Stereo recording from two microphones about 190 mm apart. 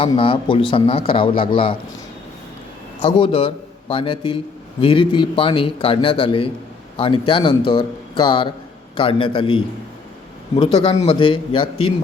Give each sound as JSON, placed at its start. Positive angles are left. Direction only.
{"t": 0.1, "sound": "a man's voice", "side_deg": 25}
{"t": 3.0, "sound": "a man's voice", "side_deg": 30}